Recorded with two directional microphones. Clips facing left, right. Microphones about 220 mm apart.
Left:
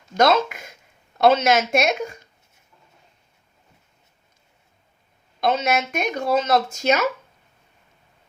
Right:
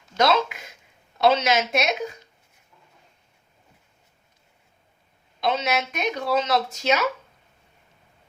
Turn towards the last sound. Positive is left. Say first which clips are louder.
# left 3 dB
turn(degrees=45)  # may be behind; listen again after turning